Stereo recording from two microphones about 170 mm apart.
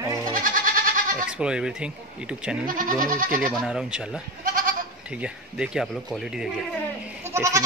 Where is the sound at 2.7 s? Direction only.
50° right (ahead or behind).